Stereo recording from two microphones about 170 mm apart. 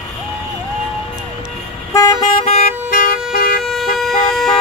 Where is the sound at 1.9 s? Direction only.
20° left (ahead or behind).